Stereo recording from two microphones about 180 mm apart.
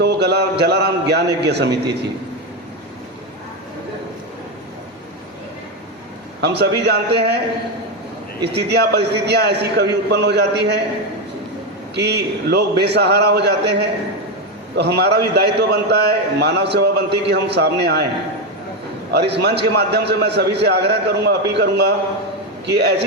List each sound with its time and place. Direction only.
0.0 s a man's voice: 65° right (ahead or behind)
6.4 s a man's voice: 65° right (ahead or behind)
8.5 s a man's voice: 65° right (ahead or behind)
11.9 s a man's voice: 65° right (ahead or behind)
19.1 s a man's voice: 70° right (ahead or behind)